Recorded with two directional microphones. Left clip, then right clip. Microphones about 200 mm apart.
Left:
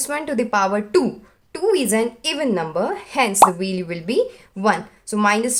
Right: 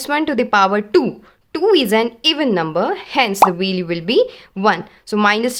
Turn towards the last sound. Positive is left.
turn(degrees=-35)  # may be behind; listen again after turning